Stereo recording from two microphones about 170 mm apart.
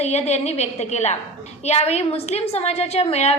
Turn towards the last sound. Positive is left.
turn(degrees=40)  # may be behind; listen again after turning